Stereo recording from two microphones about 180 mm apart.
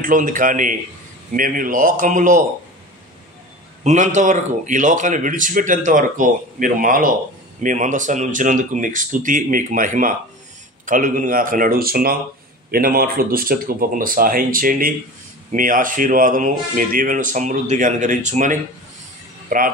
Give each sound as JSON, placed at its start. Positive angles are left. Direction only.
{"t": 0.0, "sound": "a man's voice", "side_deg": -50}
{"t": 3.8, "sound": "a man's voice", "side_deg": -40}